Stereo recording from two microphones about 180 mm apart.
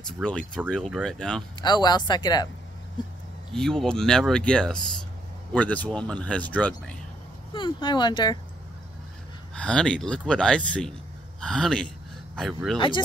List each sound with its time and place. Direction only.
0.0 s speech: 5° left (ahead or behind)
1.6 s speech: 25° left (ahead or behind)
3.5 s speech: 5° left (ahead or behind)
7.5 s speech: 25° left (ahead or behind)
9.6 s speech: 5° left (ahead or behind)
12.7 s speech: 25° left (ahead or behind)